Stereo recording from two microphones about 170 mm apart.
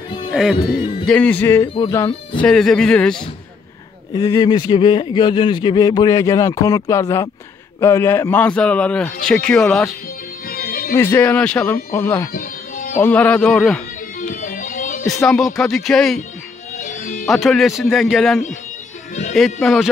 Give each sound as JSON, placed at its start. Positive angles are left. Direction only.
{"t": 0.3, "sound": "a man's voice", "side_deg": -5}
{"t": 4.1, "sound": "a man's voice", "side_deg": 20}
{"t": 10.4, "sound": "music", "side_deg": 60}
{"t": 10.9, "sound": "a man's voice", "side_deg": 10}
{"t": 12.3, "sound": "music", "side_deg": 55}
{"t": 13.0, "sound": "a man's voice", "side_deg": 10}
{"t": 14.2, "sound": "music", "side_deg": 50}
{"t": 15.2, "sound": "speech", "side_deg": 0}
{"t": 16.8, "sound": "music", "side_deg": 50}
{"t": 17.3, "sound": "speech", "side_deg": 0}